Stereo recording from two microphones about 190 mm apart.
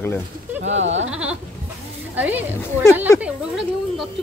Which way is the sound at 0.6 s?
75° right (ahead or behind).